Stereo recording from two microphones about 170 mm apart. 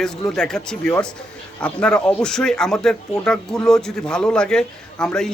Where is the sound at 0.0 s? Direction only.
5° left (ahead or behind).